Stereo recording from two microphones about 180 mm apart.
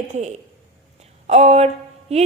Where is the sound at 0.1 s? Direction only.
40° right (ahead or behind).